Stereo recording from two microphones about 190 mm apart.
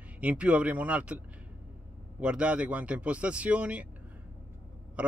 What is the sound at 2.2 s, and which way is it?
Speech, 5° right (ahead or behind).